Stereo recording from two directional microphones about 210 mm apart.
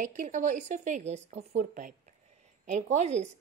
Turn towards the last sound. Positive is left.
turn(degrees=-35)  # may be behind; listen again after turning